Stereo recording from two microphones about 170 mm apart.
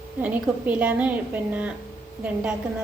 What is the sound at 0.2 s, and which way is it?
Speech, 10° right (ahead or behind).